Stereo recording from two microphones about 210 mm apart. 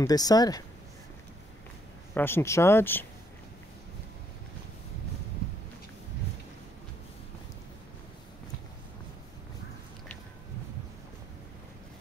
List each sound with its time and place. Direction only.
0.0 s speech: 15° left (ahead or behind)
2.1 s speech: 10° left (ahead or behind)